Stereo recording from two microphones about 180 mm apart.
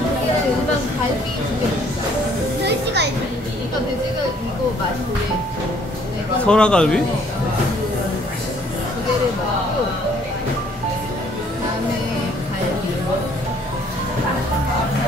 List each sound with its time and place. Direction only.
2.6 s music: 70° right (ahead or behind)
6.4 s speech: 5° left (ahead or behind)